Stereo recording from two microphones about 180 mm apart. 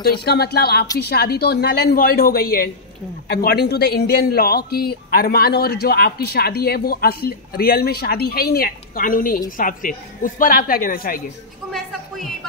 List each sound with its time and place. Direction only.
0.0 s speech: 60° left (ahead or behind)